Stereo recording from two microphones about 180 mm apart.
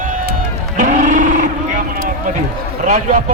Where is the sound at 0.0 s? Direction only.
50° right (ahead or behind).